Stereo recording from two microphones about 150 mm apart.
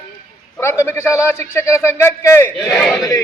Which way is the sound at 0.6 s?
15° left (ahead or behind).